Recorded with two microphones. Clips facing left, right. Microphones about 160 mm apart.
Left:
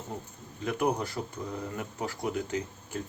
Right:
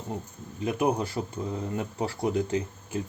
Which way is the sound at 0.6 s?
25° right (ahead or behind).